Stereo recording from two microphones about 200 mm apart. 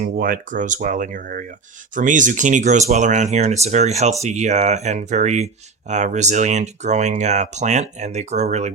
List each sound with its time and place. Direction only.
0.0 s speech: 45° right (ahead or behind)